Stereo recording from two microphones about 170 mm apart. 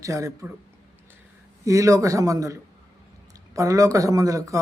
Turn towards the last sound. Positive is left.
turn(degrees=-20)  # may be behind; listen again after turning